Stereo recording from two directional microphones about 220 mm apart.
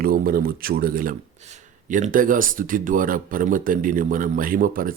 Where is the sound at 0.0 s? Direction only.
40° right (ahead or behind).